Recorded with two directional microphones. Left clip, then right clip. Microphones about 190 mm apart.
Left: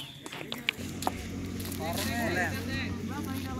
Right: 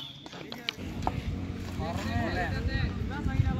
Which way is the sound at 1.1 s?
Centre (ahead or behind).